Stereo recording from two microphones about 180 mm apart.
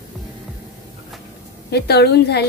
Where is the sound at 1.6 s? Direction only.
65° left (ahead or behind).